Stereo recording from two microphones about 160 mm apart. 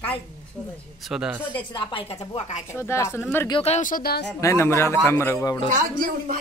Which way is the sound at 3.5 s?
35° left (ahead or behind).